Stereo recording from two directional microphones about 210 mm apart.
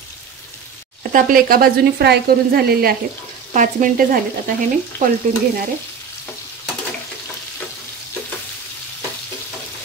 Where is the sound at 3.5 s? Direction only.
40° right (ahead or behind).